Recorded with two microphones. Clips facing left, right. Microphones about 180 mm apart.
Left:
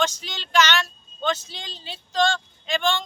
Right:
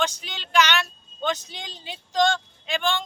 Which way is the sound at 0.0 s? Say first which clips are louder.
Left 2 dB; 10° right (ahead or behind).